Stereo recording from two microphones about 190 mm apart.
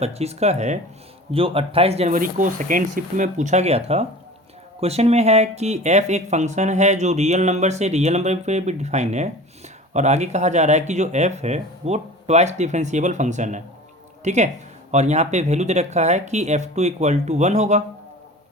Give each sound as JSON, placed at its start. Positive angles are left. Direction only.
{"t": 0.0, "sound": "speech", "side_deg": -35}